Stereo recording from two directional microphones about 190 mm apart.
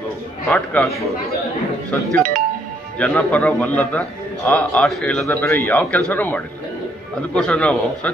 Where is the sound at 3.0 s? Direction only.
5° left (ahead or behind).